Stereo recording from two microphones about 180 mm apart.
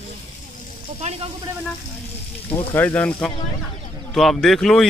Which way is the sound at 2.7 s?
10° left (ahead or behind).